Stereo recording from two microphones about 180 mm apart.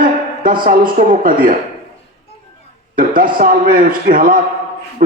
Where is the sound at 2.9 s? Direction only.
50° right (ahead or behind).